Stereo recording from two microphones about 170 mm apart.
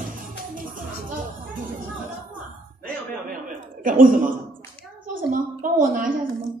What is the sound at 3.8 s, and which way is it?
Speech, 50° right (ahead or behind).